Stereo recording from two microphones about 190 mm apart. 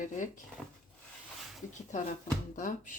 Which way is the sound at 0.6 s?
5° left (ahead or behind).